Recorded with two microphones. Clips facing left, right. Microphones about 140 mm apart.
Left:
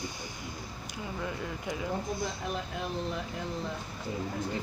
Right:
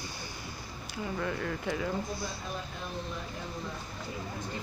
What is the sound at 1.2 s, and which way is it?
Speech, 15° left (ahead or behind).